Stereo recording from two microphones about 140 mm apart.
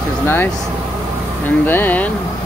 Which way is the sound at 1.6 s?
15° left (ahead or behind).